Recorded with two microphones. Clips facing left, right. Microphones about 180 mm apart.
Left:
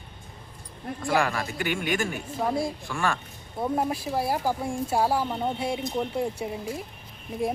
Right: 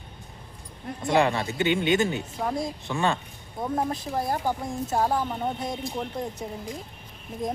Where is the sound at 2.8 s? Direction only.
20° right (ahead or behind).